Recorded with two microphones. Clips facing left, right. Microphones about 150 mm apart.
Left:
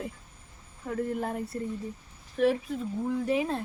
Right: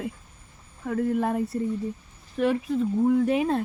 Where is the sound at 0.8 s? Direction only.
75° right (ahead or behind).